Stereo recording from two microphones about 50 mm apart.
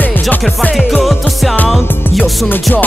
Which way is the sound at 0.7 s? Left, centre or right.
Centre.